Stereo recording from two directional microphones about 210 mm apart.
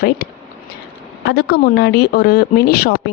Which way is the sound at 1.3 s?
55° left (ahead or behind).